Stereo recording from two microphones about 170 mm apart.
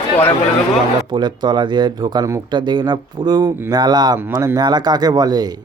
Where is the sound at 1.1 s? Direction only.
25° right (ahead or behind).